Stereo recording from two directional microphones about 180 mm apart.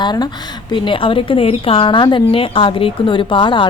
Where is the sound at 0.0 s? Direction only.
25° left (ahead or behind).